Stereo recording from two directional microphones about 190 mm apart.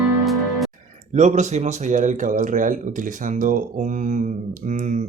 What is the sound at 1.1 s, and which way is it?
Speech, 40° right (ahead or behind).